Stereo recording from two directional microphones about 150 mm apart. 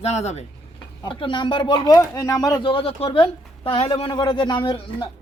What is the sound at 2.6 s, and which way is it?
Speech, 40° left (ahead or behind).